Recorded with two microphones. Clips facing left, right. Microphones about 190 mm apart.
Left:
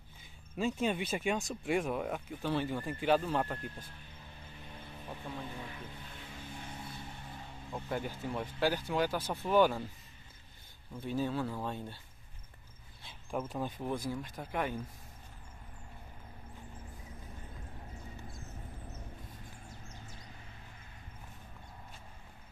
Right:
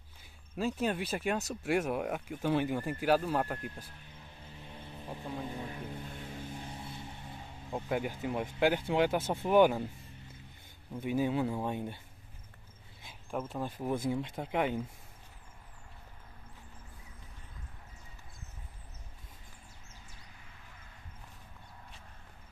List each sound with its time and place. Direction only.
0.6 s speech: 5° right (ahead or behind)
5.0 s speech: 15° right (ahead or behind)
5.6 s vehicle: 35° right (ahead or behind)
7.9 s speech: 10° right (ahead or behind)
10.9 s speech: 15° right (ahead or behind)
13.3 s speech: centre (ahead or behind)
13.9 s speech: 25° right (ahead or behind)